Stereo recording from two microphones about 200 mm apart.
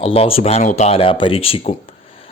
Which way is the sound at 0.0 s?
30° left (ahead or behind).